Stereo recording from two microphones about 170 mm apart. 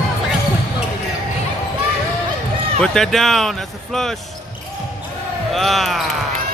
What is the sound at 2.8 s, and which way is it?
Speech, 5° left (ahead or behind).